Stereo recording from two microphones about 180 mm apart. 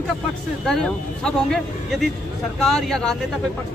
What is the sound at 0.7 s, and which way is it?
Speech, 5° left (ahead or behind).